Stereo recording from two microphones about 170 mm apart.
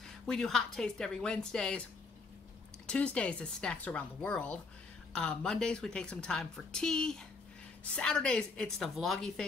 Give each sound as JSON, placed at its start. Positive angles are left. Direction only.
{"t": 0.3, "sound": "a woman's voice", "side_deg": 0}
{"t": 2.9, "sound": "a woman's voice", "side_deg": 5}